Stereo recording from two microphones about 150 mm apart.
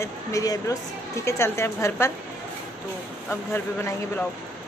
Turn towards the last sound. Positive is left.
turn(degrees=15)  # may be behind; listen again after turning